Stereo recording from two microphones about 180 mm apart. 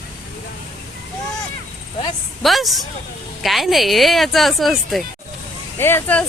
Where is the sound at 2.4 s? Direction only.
Centre (ahead or behind).